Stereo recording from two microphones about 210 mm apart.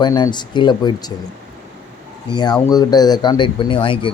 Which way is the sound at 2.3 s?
20° left (ahead or behind).